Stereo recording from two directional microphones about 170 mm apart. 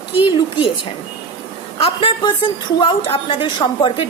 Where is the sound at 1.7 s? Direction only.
30° left (ahead or behind).